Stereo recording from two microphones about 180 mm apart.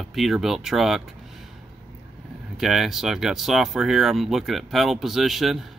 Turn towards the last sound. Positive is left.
turn(degrees=0)  # may be behind; listen again after turning